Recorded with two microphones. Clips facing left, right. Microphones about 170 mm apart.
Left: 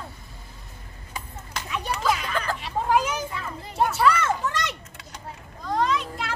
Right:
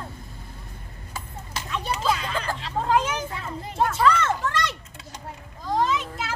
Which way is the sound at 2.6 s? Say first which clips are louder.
Even; 10° left (ahead or behind).